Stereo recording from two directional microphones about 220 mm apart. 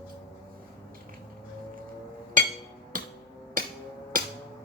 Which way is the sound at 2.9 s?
40° right (ahead or behind).